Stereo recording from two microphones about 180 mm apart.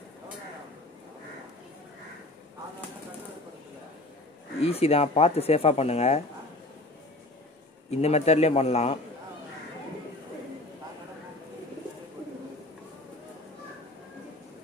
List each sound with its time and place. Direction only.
4.6 s speech: 35° left (ahead or behind)
7.9 s speech: 35° left (ahead or behind)